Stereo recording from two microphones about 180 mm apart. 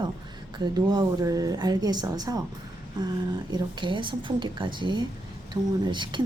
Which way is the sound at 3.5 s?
25° right (ahead or behind).